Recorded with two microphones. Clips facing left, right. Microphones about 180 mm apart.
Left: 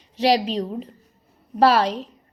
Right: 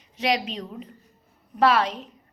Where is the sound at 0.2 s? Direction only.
35° left (ahead or behind).